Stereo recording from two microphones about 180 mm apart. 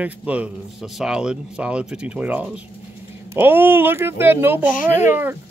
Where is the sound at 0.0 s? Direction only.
5° right (ahead or behind).